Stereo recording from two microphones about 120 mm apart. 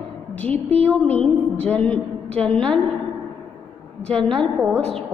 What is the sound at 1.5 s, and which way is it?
A woman's voice, 10° left (ahead or behind).